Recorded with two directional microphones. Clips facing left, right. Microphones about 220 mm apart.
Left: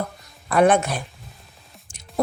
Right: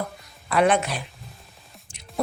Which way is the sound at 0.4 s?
45° left (ahead or behind).